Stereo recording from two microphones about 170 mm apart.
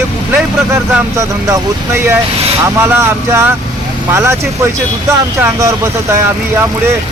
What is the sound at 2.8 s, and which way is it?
Speech, 15° right (ahead or behind).